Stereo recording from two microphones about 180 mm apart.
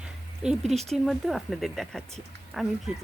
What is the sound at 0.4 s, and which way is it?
Speech, centre (ahead or behind).